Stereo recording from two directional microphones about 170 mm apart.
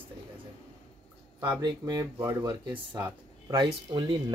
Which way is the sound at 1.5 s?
25° right (ahead or behind).